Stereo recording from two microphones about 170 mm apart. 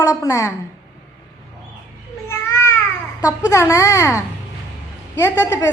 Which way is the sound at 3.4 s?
15° left (ahead or behind).